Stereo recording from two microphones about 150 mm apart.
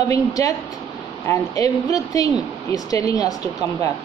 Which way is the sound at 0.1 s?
25° left (ahead or behind).